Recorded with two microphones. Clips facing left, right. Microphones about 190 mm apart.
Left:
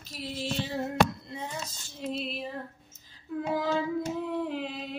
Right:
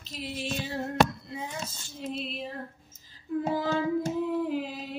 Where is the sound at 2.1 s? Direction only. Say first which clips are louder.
Left 2 dB; centre (ahead or behind).